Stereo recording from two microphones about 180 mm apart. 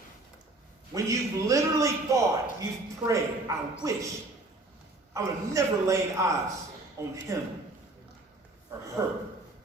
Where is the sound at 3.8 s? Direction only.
15° right (ahead or behind).